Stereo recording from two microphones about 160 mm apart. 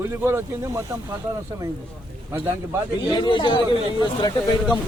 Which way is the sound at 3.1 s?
30° left (ahead or behind).